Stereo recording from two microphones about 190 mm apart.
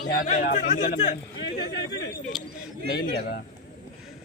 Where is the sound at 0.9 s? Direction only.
35° left (ahead or behind).